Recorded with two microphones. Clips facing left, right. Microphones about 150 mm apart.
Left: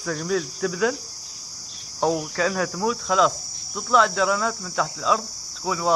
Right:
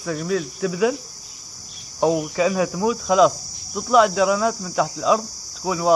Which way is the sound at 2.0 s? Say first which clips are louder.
Right 4 dB; 10° right (ahead or behind).